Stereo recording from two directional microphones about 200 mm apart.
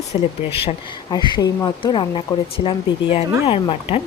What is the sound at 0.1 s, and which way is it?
Speech, 30° left (ahead or behind).